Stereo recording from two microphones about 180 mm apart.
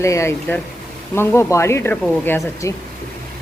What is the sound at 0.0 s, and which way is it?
Speech, 15° left (ahead or behind).